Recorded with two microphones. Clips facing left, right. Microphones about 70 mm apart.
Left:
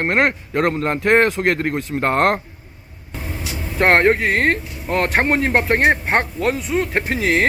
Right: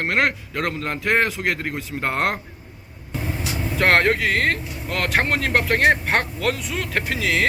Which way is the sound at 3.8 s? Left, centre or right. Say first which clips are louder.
Left 4 dB; left.